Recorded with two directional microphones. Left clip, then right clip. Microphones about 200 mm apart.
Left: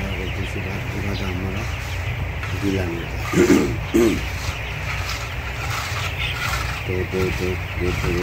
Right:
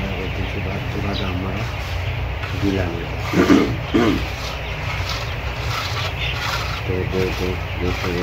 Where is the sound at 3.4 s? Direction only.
40° left (ahead or behind).